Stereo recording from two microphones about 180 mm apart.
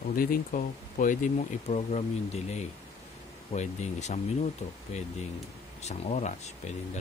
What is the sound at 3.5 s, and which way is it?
Speech, 40° left (ahead or behind).